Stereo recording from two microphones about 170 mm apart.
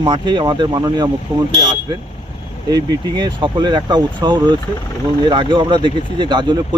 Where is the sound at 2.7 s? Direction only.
25° right (ahead or behind).